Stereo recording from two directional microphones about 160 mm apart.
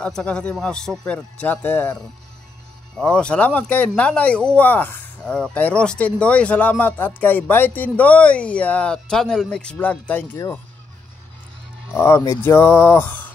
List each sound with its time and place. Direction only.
0.0 s speech: 5° left (ahead or behind)
3.0 s speech: 5° left (ahead or behind)
11.9 s speech: 15° left (ahead or behind)